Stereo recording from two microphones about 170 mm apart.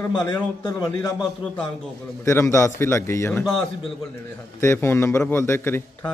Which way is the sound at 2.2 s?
15° left (ahead or behind).